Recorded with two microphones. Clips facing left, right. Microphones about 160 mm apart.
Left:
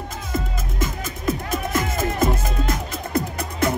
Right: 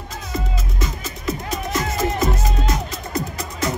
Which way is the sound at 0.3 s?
50° left (ahead or behind).